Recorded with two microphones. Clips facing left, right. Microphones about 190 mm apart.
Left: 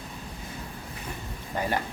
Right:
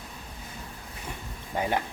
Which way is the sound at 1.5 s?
15° right (ahead or behind).